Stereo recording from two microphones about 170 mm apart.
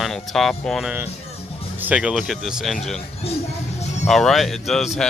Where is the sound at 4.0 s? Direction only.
Centre (ahead or behind).